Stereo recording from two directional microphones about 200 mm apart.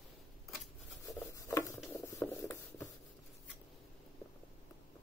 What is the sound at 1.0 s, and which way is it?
Rub, 15° left (ahead or behind).